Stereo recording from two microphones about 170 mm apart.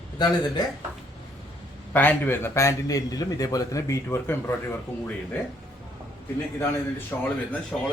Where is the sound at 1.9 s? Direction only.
10° left (ahead or behind).